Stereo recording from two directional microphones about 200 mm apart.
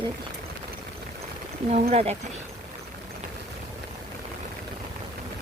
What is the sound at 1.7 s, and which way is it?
Speech, 30° right (ahead or behind).